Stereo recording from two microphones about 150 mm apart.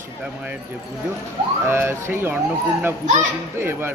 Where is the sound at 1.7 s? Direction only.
15° right (ahead or behind).